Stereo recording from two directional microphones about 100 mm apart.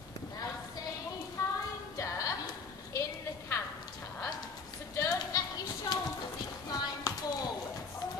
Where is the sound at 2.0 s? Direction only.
30° left (ahead or behind).